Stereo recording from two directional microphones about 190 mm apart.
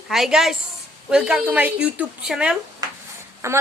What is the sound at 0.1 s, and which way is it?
A woman's voice, centre (ahead or behind).